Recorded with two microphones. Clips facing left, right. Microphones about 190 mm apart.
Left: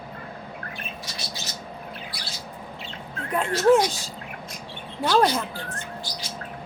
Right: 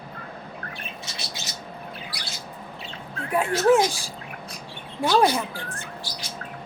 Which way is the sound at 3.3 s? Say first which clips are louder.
Even; 10° right (ahead or behind).